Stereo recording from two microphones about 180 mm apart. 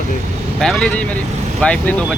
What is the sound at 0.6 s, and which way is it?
Speech, 5° left (ahead or behind).